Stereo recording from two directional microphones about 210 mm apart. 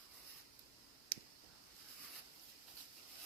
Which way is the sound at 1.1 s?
20° right (ahead or behind).